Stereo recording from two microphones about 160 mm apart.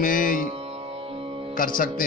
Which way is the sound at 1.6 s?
60° left (ahead or behind).